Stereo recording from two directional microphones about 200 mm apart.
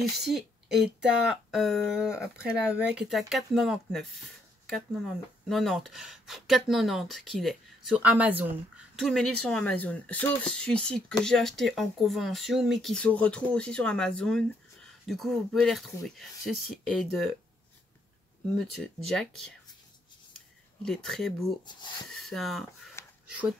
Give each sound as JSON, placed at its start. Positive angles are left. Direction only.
{"t": 0.2, "sound": "speech", "side_deg": 0}
{"t": 20.8, "sound": "speech", "side_deg": 0}
{"t": 21.6, "sound": "speech", "side_deg": 20}
{"t": 22.2, "sound": "speech", "side_deg": 0}